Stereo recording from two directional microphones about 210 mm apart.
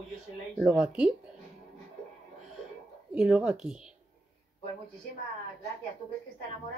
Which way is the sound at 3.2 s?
5° right (ahead or behind).